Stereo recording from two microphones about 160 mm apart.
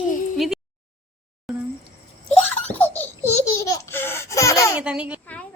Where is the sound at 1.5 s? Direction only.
Centre (ahead or behind).